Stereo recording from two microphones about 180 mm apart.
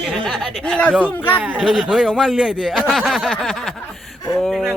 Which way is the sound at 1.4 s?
5° right (ahead or behind).